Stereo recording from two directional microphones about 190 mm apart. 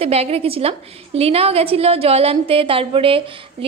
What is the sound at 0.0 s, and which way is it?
A woman's voice, 30° right (ahead or behind).